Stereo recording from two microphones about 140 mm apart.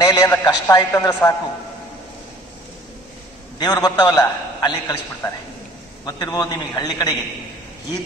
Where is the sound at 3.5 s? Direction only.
30° left (ahead or behind).